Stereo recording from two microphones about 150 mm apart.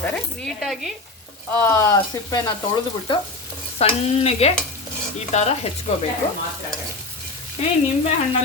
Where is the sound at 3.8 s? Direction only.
45° left (ahead or behind).